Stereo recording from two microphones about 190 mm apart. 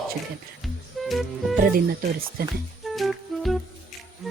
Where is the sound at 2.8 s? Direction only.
Centre (ahead or behind).